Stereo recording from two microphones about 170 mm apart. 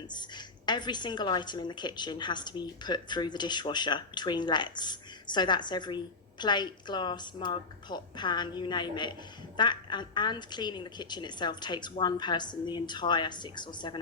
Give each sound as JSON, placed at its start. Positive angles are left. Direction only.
{"t": 0.1, "sound": "a woman's voice", "side_deg": 25}